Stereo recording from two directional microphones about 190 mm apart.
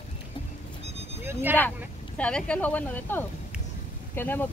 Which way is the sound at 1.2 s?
10° right (ahead or behind).